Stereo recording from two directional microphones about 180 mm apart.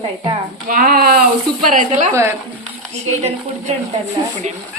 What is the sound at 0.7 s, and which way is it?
Speech, 55° right (ahead or behind).